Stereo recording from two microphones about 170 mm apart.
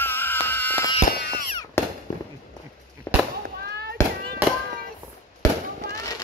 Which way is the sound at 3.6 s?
70° right (ahead or behind).